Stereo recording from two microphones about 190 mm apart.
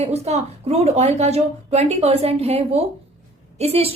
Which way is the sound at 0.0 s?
35° right (ahead or behind).